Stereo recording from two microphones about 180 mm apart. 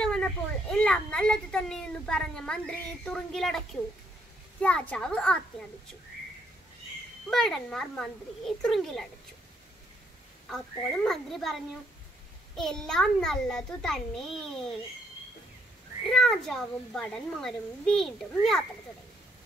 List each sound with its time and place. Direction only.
0.0 s a child's voice: 5° left (ahead or behind)
7.2 s a child's voice: centre (ahead or behind)
11.1 s a child's voice: centre (ahead or behind)
16.1 s a child's voice: centre (ahead or behind)